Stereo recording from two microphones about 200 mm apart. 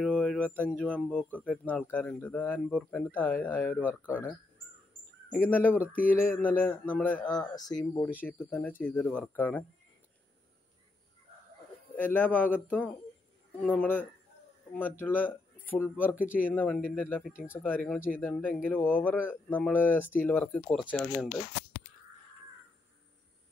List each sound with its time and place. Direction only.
0.1 s a sound: 5° left (ahead or behind)
0.6 s speech: 5° left (ahead or behind)
3.8 s speech: 5° right (ahead or behind)
5.3 s speech: 10° left (ahead or behind)
5.9 s speech: 45° left (ahead or behind)
6.4 s speech: 5° left (ahead or behind)
7.3 s speech: 20° left (ahead or behind)
11.9 s speech: 10° left (ahead or behind)
16.2 s speech: 45° left (ahead or behind)
16.4 s speech: 5° left (ahead or behind)